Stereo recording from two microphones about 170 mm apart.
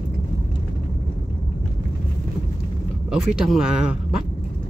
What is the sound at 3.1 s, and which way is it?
Speech, 5° right (ahead or behind).